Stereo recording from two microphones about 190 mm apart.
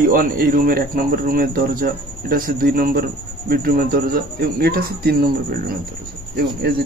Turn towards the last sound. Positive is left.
turn(degrees=-55)  # may be behind; listen again after turning